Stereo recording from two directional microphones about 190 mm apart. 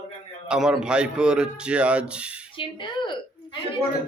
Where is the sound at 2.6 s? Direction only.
25° left (ahead or behind).